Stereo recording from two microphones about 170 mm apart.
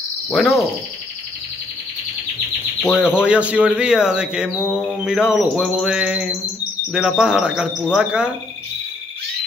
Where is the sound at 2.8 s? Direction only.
10° left (ahead or behind).